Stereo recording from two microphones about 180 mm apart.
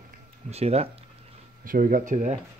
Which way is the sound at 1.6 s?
50° right (ahead or behind).